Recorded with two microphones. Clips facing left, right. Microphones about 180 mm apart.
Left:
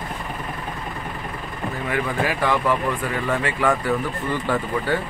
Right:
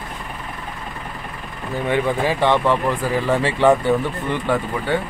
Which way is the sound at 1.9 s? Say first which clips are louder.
Right 5 dB; 25° right (ahead or behind).